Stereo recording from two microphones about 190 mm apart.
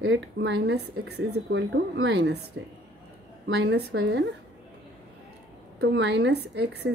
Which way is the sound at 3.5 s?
65° right (ahead or behind).